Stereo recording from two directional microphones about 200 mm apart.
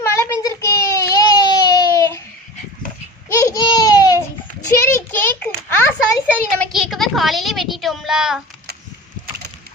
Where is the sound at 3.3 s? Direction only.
15° left (ahead or behind).